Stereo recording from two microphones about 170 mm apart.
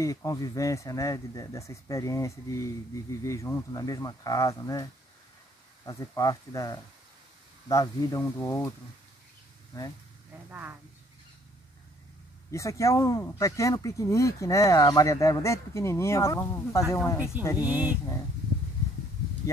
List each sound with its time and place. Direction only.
0.0 s speech: 20° left (ahead or behind)
5.9 s speech: 20° left (ahead or behind)
10.5 s speech: 10° right (ahead or behind)
12.4 s speech: 20° left (ahead or behind)
17.6 s speech: 10° right (ahead or behind)